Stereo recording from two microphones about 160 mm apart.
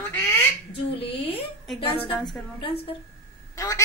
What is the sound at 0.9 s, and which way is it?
Speech, 35° left (ahead or behind).